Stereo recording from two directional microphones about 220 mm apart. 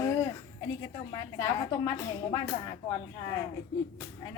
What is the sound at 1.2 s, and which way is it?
A woman's voice, 15° left (ahead or behind).